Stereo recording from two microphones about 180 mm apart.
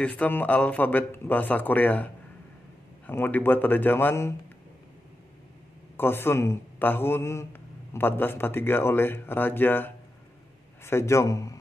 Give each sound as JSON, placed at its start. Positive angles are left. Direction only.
{"t": 0.0, "sound": "a man's voice", "side_deg": 10}
{"t": 3.1, "sound": "a man's voice", "side_deg": 10}
{"t": 5.9, "sound": "a man's voice", "side_deg": 15}